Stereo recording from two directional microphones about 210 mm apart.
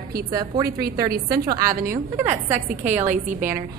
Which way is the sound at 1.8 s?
40° right (ahead or behind).